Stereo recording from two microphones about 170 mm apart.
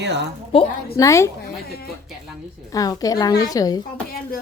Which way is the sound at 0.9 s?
20° left (ahead or behind).